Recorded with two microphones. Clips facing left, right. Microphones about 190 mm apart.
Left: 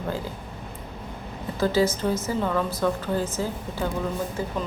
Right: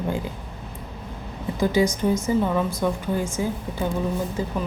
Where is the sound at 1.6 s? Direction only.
15° right (ahead or behind).